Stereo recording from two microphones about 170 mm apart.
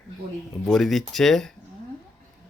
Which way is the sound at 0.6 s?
Centre (ahead or behind).